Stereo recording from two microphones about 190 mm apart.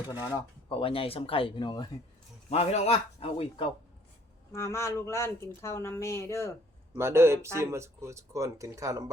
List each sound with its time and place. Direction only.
0.1 s a man's voice: 25° left (ahead or behind)
4.5 s speech: 15° left (ahead or behind)
6.9 s speech: 15° right (ahead or behind)